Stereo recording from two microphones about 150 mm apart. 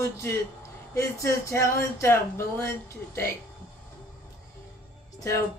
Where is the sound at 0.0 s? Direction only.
20° left (ahead or behind).